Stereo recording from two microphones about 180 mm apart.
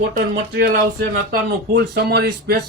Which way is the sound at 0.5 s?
65° right (ahead or behind).